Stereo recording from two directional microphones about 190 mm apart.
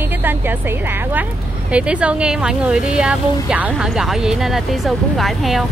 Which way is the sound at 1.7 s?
5° right (ahead or behind).